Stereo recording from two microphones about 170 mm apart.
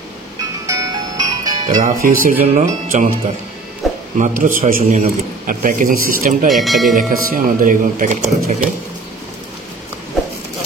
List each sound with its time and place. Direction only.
0.7 s music: 20° right (ahead or behind)
1.8 s speech: 50° right (ahead or behind)
3.8 s a sound: centre (ahead or behind)
4.2 s speech: 50° right (ahead or behind)
6.5 s speech: centre (ahead or behind)
7.0 s speech: 55° right (ahead or behind)